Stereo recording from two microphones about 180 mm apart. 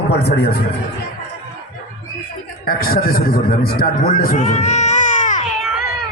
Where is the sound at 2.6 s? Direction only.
55° left (ahead or behind).